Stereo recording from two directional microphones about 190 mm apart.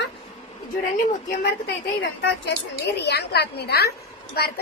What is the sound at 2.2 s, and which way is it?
A woman's voice, 65° left (ahead or behind).